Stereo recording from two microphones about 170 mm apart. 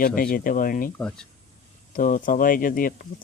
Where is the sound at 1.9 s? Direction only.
50° left (ahead or behind).